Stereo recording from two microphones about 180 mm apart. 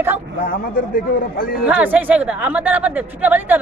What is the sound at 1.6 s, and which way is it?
A woman's voice, 10° right (ahead or behind).